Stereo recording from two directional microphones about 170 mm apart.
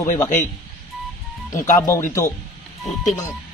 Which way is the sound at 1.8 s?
15° left (ahead or behind).